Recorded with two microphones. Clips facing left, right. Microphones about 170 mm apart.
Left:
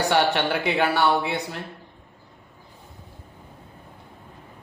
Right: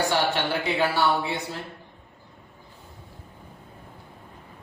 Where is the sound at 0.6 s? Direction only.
65° left (ahead or behind).